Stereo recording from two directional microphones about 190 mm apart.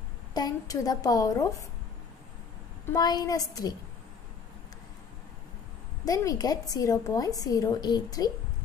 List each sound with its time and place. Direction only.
0.3 s a woman's voice: 20° left (ahead or behind)
2.9 s a woman's voice: 20° left (ahead or behind)
6.0 s a woman's voice: 20° left (ahead or behind)